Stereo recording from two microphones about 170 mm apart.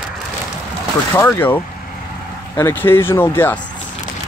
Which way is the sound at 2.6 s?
15° left (ahead or behind).